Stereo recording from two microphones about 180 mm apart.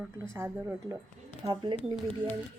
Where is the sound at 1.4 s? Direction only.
25° right (ahead or behind).